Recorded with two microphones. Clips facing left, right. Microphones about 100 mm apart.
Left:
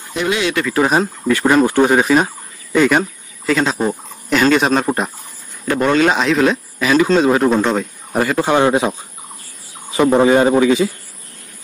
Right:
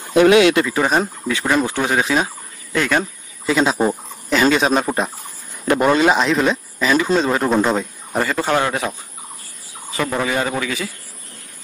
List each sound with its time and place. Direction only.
0.2 s speech: 70° right (ahead or behind)
0.7 s a man's voice: 5° left (ahead or behind)
3.4 s a man's voice: 10° right (ahead or behind)
5.7 s a man's voice: 10° right (ahead or behind)
8.1 s a man's voice: 10° left (ahead or behind)